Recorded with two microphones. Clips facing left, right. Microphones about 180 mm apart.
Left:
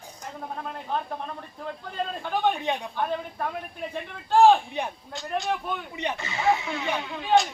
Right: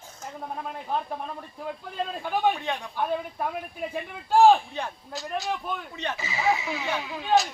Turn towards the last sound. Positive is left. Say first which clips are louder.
# left 1 dB
turn(degrees=0)  # may be behind; listen again after turning